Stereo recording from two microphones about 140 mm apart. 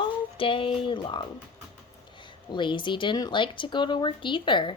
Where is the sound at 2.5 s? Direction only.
35° left (ahead or behind).